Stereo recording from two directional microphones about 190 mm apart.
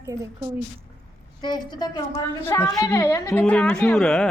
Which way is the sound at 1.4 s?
20° left (ahead or behind).